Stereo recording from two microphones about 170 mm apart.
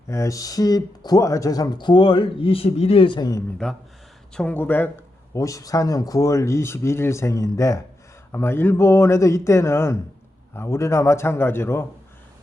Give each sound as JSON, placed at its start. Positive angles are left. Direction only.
{"t": 0.1, "sound": "speech", "side_deg": 20}
{"t": 3.6, "sound": "a man's voice", "side_deg": 5}